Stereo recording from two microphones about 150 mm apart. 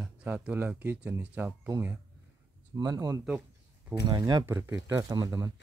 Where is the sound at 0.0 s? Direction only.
10° right (ahead or behind); by 5.5 s 25° right (ahead or behind).